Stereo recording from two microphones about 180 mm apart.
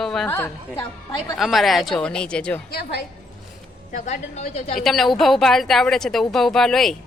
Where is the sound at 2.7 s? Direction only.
60° left (ahead or behind).